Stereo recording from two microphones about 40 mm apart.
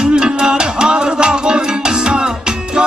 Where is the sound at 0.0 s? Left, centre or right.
Centre.